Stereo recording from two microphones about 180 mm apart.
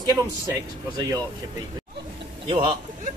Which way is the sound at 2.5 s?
30° right (ahead or behind).